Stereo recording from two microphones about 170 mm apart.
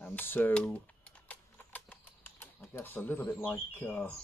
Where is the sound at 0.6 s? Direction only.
10° left (ahead or behind).